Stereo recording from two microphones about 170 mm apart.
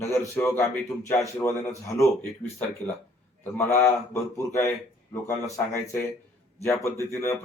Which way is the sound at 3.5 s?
15° left (ahead or behind).